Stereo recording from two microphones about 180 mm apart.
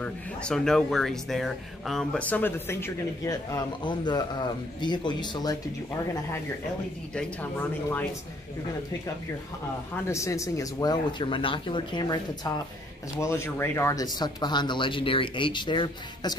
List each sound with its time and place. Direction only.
0.0 s speech: 5° left (ahead or behind); by 5.6 s 25° left (ahead or behind)
7.2 s speech: 10° left (ahead or behind)
10.0 s speech: 15° left (ahead or behind)